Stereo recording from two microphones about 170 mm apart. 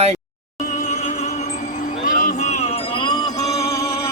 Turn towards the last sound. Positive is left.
turn(degrees=15)  # may be behind; listen again after turning